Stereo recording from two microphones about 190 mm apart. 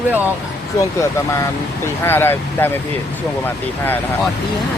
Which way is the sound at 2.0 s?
10° left (ahead or behind).